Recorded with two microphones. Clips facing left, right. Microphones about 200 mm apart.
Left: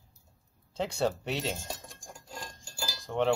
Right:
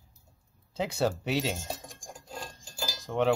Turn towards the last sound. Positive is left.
turn(degrees=-15)  # may be behind; listen again after turning